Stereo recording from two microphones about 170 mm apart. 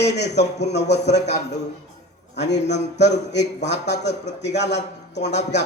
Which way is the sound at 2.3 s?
90° left.